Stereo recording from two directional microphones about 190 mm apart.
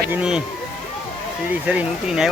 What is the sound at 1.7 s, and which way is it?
Speech, 5° right (ahead or behind).